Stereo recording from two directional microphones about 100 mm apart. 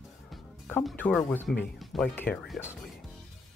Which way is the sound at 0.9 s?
15° left (ahead or behind).